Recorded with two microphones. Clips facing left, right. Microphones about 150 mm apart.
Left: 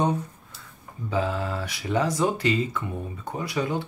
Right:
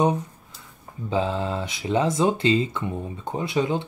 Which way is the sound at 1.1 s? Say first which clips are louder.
Right 2 dB; 25° right (ahead or behind).